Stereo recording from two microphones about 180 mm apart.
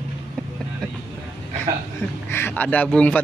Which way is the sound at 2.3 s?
15° left (ahead or behind).